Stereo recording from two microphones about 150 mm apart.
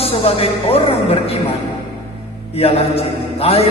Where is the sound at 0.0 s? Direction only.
40° left (ahead or behind).